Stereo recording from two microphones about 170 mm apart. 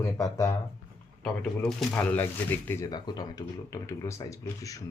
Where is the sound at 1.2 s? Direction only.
Centre (ahead or behind).